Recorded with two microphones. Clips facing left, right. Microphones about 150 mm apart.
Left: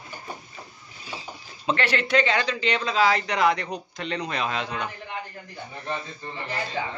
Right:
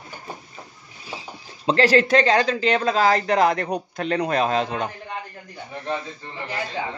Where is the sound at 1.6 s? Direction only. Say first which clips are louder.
Right 8 dB; 35° right (ahead or behind).